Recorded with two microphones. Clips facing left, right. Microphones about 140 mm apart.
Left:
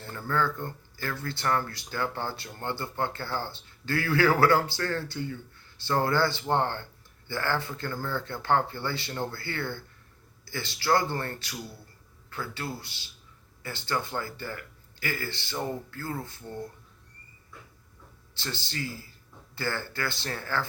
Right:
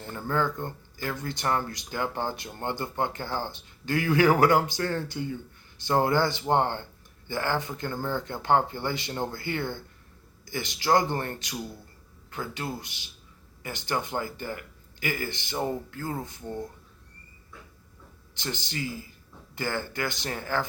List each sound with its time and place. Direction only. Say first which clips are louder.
0.0 s speech: right 1 dB; 20° right (ahead or behind)
18.3 s speech: right 2 dB; 15° right (ahead or behind)